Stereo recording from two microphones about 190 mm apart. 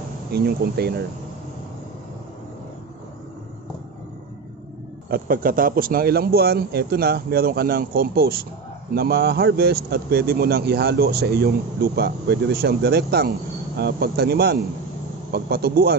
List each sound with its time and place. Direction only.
0.3 s a man's voice: 55° right (ahead or behind)
5.1 s a man's voice: 50° right (ahead or behind)